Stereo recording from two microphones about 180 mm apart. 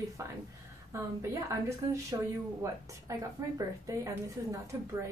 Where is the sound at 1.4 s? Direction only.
15° right (ahead or behind).